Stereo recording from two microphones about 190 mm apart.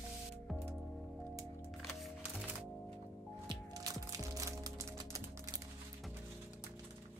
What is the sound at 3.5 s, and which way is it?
Music, 20° right (ahead or behind).